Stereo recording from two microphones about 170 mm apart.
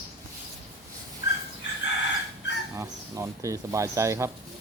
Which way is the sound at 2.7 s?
15° right (ahead or behind).